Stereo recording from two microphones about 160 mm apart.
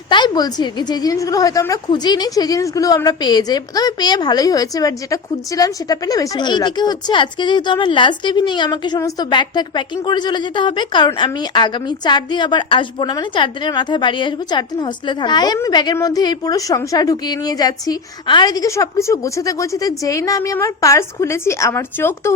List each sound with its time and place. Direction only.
0.1 s a woman's voice: 25° left (ahead or behind)